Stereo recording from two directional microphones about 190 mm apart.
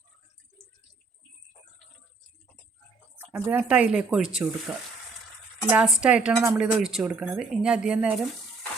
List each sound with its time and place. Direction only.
3.3 s a woman's voice: 10° right (ahead or behind)
5.7 s a woman's voice: 5° right (ahead or behind)